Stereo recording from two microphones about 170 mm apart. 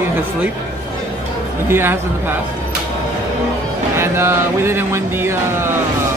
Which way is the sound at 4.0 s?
15° right (ahead or behind).